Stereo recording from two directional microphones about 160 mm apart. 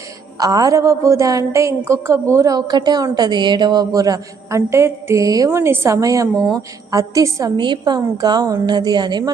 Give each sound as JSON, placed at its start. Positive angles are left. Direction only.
{"t": 0.3, "sound": "a woman's voice", "side_deg": -20}